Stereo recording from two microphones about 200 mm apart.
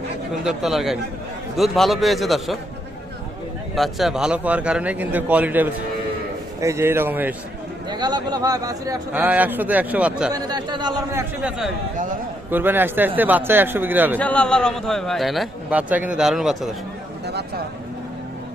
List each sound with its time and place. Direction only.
0.4 s a man's voice: centre (ahead or behind)
3.8 s a man's voice: centre (ahead or behind)
7.9 s a man's voice: 20° right (ahead or behind); by 10.3 s 5° right (ahead or behind)
10.3 s a man's voice: 20° right (ahead or behind)
14.2 s a man's voice: 5° left (ahead or behind)